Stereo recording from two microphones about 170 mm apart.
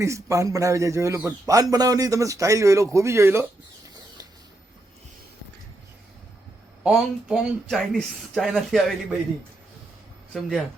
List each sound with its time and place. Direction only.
0.0 s a man's voice: 15° right (ahead or behind)
6.8 s speech: centre (ahead or behind)